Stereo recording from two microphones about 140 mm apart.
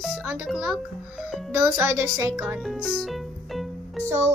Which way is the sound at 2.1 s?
25° right (ahead or behind).